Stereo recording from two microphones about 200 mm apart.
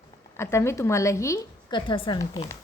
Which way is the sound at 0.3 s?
15° left (ahead or behind).